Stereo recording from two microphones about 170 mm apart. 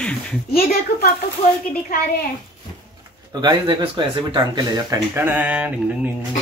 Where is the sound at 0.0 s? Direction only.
5° left (ahead or behind).